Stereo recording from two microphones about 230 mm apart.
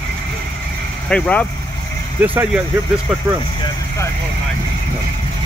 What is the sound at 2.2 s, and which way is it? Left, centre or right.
Speech, centre.